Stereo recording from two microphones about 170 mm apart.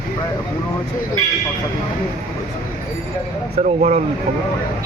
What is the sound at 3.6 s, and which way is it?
Speech, 45° right (ahead or behind).